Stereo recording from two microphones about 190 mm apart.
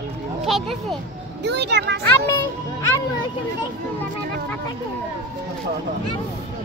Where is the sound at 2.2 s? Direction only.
15° left (ahead or behind).